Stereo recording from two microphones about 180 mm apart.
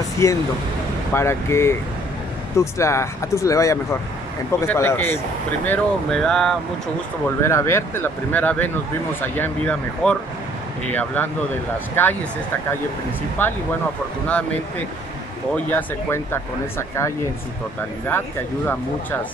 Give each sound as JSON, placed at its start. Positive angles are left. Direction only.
{"t": 0.2, "sound": "speech", "side_deg": 15}
{"t": 7.2, "sound": "speech", "side_deg": 15}
{"t": 13.4, "sound": "speech", "side_deg": 10}
{"t": 15.5, "sound": "speech", "side_deg": 10}